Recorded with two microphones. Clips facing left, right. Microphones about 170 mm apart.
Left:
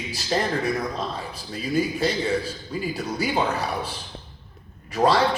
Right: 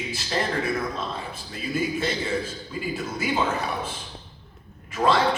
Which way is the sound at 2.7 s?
40° left (ahead or behind).